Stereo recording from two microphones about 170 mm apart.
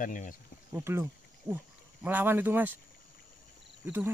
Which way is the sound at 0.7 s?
15° right (ahead or behind).